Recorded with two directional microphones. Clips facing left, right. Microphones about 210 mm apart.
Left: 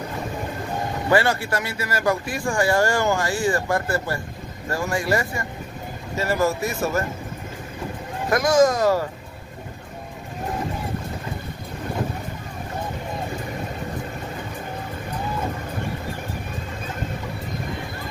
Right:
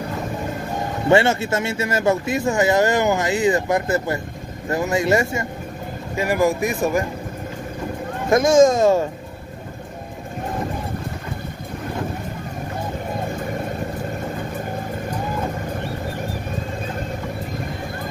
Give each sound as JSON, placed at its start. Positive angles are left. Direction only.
{"t": 1.0, "sound": "speech", "side_deg": -25}
{"t": 8.3, "sound": "speech", "side_deg": -25}